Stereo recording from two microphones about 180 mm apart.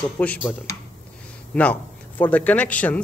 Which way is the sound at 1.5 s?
10° left (ahead or behind).